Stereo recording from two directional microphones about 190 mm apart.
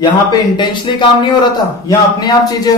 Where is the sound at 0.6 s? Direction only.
25° left (ahead or behind).